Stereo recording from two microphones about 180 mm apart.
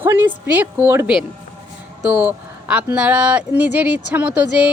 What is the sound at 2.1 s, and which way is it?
A woman's voice, 10° right (ahead or behind).